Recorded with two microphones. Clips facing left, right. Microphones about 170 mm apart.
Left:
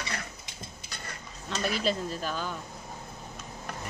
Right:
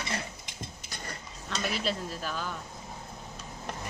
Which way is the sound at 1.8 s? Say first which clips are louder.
Left 3 dB; 5° right (ahead or behind).